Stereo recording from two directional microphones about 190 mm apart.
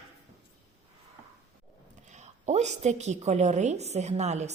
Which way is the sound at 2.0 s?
40° right (ahead or behind).